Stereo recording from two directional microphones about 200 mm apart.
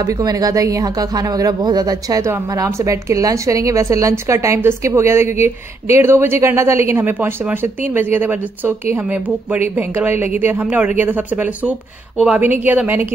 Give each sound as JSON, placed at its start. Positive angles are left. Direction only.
{"t": 0.0, "sound": "speech", "side_deg": -20}